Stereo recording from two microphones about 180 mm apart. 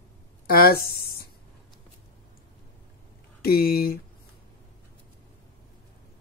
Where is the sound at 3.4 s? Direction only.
55° left (ahead or behind).